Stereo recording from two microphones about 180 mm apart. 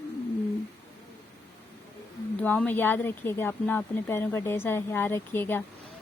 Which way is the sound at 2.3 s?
10° left (ahead or behind).